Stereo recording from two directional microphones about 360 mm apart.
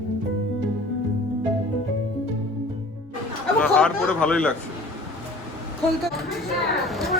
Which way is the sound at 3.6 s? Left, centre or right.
Centre.